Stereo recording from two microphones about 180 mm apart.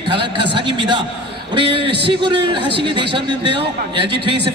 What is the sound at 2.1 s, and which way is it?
A man's voice, 25° right (ahead or behind).